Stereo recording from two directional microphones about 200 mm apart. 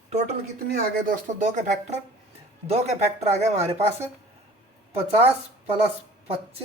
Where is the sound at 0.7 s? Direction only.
45° right (ahead or behind).